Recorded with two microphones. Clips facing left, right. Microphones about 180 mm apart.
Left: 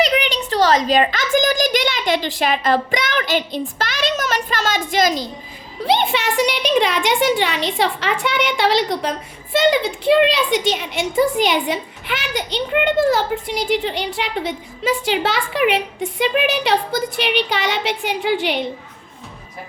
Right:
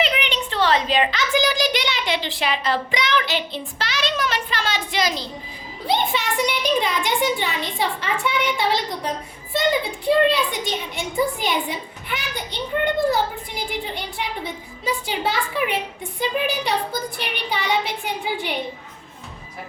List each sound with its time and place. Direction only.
0.0 s a child's voice: 40° left (ahead or behind)
5.8 s a woman's voice: 75° left (ahead or behind)